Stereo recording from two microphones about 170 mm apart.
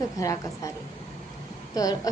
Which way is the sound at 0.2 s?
20° left (ahead or behind).